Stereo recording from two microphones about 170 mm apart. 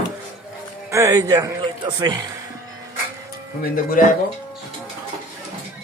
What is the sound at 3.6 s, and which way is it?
Speech, 55° left (ahead or behind).